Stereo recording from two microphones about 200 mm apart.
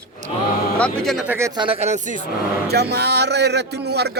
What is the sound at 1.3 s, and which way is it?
Speech, 20° right (ahead or behind).